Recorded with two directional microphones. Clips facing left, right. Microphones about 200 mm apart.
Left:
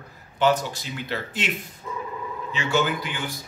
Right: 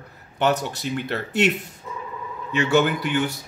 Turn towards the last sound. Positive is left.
turn(degrees=-60)  # may be behind; listen again after turning